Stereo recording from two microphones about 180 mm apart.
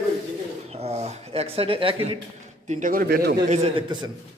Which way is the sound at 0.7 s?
35° right (ahead or behind).